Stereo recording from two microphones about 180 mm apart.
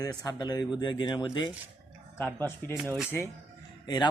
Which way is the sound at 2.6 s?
10° left (ahead or behind).